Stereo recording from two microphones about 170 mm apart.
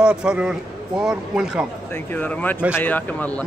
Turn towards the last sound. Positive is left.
turn(degrees=10)  # may be behind; listen again after turning